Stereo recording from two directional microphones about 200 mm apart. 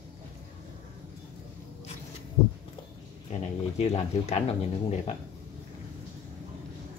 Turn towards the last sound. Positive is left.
turn(degrees=35)  # may be behind; listen again after turning